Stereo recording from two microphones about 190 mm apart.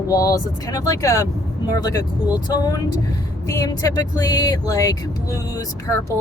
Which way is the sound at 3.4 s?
15° left (ahead or behind).